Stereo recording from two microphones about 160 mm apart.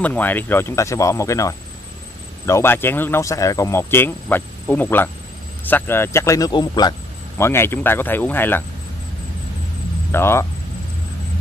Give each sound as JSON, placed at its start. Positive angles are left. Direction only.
{"t": 0.0, "sound": "speech", "side_deg": 10}
{"t": 10.1, "sound": "speech", "side_deg": 15}